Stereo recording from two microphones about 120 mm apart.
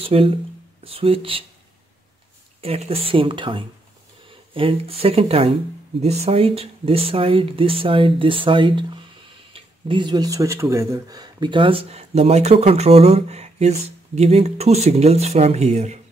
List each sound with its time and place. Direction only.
0.0 s speech: 50° right (ahead or behind)
2.6 s speech: 55° right (ahead or behind)